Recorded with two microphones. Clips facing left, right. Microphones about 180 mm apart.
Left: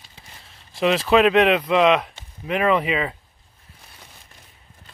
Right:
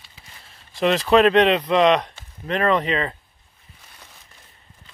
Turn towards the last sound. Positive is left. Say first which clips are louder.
# even
turn(degrees=5)  # may be behind; listen again after turning